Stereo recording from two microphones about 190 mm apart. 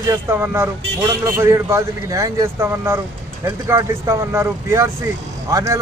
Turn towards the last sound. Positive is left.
turn(degrees=-15)  # may be behind; listen again after turning